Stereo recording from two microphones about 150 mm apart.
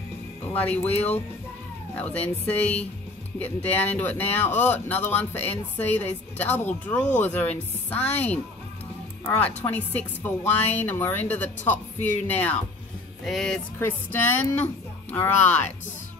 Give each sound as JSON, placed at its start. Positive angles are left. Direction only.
{"t": 0.6, "sound": "speech", "side_deg": 10}
{"t": 0.9, "sound": "speech", "side_deg": 45}
{"t": 2.0, "sound": "speech", "side_deg": 10}
{"t": 9.7, "sound": "speech", "side_deg": 10}
{"t": 13.7, "sound": "speech", "side_deg": 10}